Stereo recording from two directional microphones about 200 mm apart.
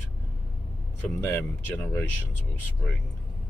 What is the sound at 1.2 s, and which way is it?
Speech, 10° left (ahead or behind).